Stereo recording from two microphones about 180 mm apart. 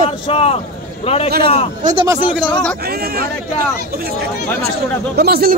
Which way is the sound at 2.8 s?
60° right (ahead or behind).